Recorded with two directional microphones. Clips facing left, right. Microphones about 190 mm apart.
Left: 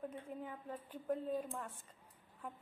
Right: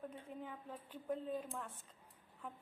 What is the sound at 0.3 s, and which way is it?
A woman's voice, 5° left (ahead or behind).